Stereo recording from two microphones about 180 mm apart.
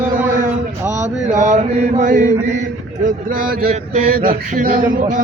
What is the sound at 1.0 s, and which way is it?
Mantra, 40° right (ahead or behind).